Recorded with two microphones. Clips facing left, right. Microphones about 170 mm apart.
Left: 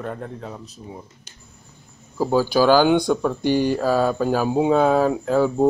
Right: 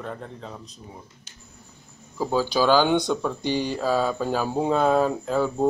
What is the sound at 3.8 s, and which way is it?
Speech, 5° left (ahead or behind).